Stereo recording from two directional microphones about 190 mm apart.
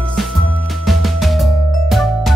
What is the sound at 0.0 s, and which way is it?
Music, centre (ahead or behind).